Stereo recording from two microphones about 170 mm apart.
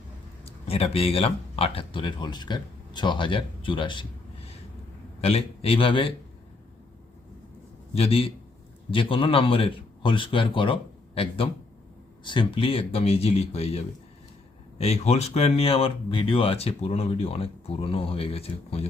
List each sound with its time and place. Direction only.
0.4 s speech: 35° left (ahead or behind)
5.2 s speech: 35° left (ahead or behind)
7.9 s speech: 35° left (ahead or behind)